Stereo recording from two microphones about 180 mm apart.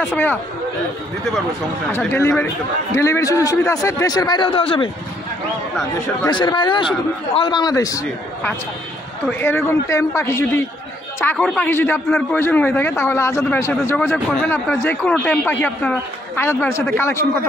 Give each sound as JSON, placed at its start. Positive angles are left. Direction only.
{"t": 0.1, "sound": "a man's voice", "side_deg": 10}
{"t": 1.9, "sound": "a man's voice", "side_deg": 15}
{"t": 6.2, "sound": "a man's voice", "side_deg": 25}